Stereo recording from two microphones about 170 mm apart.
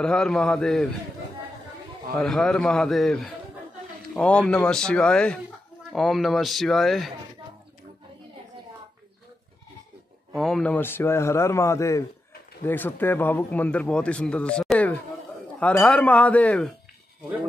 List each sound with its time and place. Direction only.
0.0 s speech: 5° left (ahead or behind)
2.1 s speech: 5° left (ahead or behind)
10.3 s speech: 5° left (ahead or behind)